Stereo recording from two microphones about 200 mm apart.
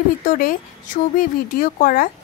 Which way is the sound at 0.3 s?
45° left (ahead or behind).